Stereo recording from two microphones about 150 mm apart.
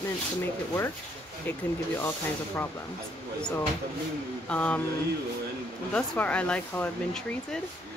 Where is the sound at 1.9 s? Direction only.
15° left (ahead or behind).